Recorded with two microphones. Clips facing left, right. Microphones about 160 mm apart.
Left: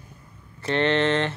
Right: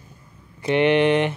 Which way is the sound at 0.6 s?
15° right (ahead or behind).